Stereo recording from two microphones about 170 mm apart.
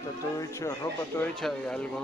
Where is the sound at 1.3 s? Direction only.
5° left (ahead or behind).